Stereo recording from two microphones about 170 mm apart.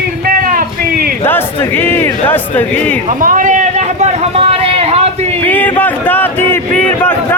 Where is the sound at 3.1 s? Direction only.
50° right (ahead or behind); by 5.0 s 35° right (ahead or behind).